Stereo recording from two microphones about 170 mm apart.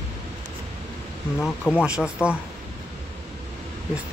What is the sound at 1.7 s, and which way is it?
Speech, 5° right (ahead or behind).